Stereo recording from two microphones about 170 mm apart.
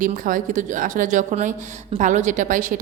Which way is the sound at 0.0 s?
50° right (ahead or behind).